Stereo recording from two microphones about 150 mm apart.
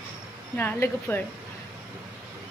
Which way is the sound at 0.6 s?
15° left (ahead or behind).